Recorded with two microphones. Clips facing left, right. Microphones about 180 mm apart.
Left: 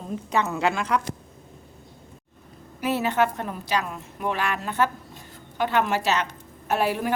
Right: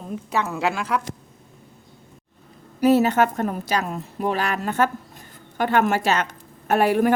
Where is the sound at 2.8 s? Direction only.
40° right (ahead or behind).